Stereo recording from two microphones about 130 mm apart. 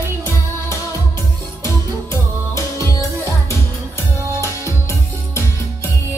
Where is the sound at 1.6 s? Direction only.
25° left (ahead or behind).